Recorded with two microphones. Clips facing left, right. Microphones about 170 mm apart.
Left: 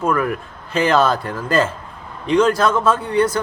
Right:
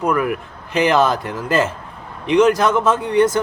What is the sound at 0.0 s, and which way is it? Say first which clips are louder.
Speech: right 1 dB; 15° right (ahead or behind).